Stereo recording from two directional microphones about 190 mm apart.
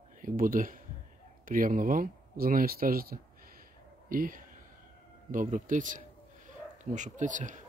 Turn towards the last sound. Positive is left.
turn(degrees=-40)  # may be behind; listen again after turning